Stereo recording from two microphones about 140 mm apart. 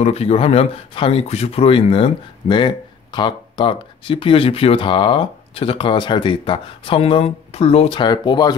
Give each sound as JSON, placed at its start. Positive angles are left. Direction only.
{"t": 0.0, "sound": "speech", "side_deg": 50}
{"t": 8.0, "sound": "speech", "side_deg": 30}